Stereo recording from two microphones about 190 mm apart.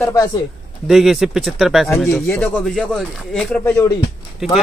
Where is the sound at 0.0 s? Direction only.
15° left (ahead or behind).